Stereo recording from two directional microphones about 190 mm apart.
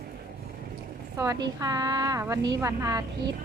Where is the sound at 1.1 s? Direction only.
15° right (ahead or behind).